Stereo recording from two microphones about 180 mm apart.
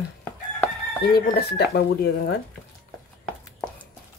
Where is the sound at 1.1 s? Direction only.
65° left (ahead or behind).